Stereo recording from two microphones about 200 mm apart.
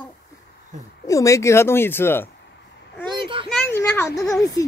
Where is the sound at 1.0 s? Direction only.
15° left (ahead or behind).